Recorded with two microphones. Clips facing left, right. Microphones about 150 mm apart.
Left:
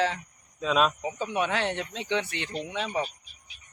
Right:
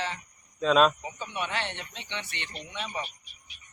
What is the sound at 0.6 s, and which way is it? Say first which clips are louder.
Speech: right 3 dB; 5° left (ahead or behind).